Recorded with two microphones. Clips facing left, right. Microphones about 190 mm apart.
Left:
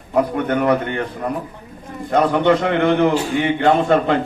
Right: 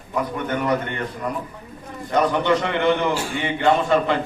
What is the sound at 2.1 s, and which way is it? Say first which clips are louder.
A man's voice: left 4 dB; 55° left (ahead or behind).